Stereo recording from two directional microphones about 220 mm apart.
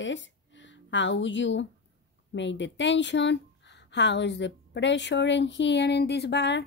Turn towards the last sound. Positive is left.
turn(degrees=50)  # may be behind; listen again after turning